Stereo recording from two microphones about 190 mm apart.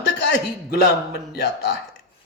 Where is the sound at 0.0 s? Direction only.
65° left (ahead or behind).